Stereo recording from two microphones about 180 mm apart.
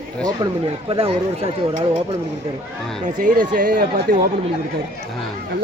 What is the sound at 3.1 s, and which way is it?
Speech, 45° right (ahead or behind).